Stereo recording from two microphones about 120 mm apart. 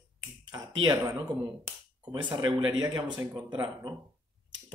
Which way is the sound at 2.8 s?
35° right (ahead or behind).